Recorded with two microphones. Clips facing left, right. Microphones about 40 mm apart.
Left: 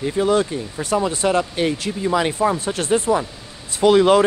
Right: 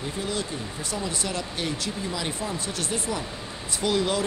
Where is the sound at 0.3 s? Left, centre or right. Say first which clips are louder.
Left 12 dB; left.